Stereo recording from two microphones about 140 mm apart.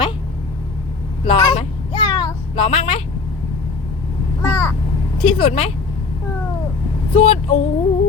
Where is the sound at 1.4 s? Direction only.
35° left (ahead or behind).